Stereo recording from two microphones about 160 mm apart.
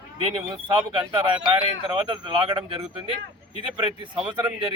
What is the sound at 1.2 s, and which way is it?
Speech, 30° right (ahead or behind).